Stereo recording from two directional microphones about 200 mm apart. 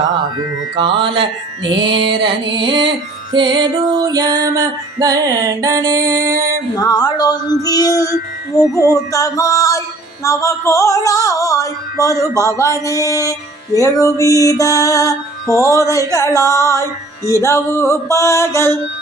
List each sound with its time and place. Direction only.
0.8 s music: 25° right (ahead or behind)
6.7 s speech: 20° left (ahead or behind)
7.6 s music: 20° left (ahead or behind)